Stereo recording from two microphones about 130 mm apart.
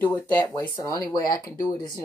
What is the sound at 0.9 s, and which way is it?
Speech, 30° left (ahead or behind).